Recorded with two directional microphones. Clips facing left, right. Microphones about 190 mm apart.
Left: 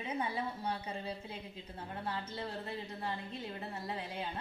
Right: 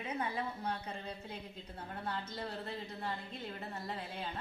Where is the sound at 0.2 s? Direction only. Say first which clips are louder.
Left 1 dB; 10° left (ahead or behind).